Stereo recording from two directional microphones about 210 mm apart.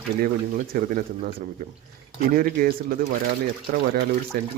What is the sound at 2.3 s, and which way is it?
Speech, 40° right (ahead or behind).